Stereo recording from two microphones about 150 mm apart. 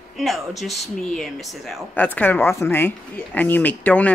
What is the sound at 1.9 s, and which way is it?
Speech, 10° left (ahead or behind).